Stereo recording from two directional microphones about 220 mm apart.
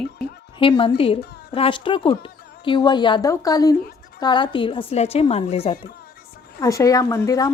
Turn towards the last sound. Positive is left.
turn(degrees=15)  # may be behind; listen again after turning